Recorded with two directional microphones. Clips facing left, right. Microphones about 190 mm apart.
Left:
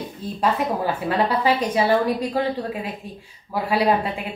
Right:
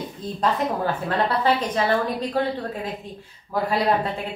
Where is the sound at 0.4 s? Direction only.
10° left (ahead or behind).